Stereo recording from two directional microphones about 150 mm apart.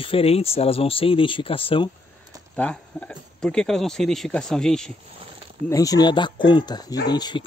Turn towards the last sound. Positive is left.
turn(degrees=30)  # may be behind; listen again after turning